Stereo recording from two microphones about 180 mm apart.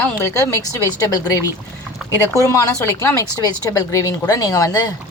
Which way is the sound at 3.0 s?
15° left (ahead or behind).